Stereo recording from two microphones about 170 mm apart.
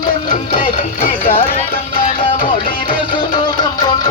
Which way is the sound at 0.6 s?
55° left (ahead or behind).